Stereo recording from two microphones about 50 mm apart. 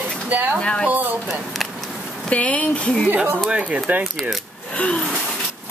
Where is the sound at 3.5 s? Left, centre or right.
Right.